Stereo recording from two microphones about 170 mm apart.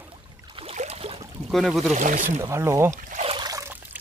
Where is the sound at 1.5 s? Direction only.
Centre (ahead or behind).